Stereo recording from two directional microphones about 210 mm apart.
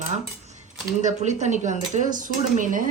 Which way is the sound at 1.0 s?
35° right (ahead or behind).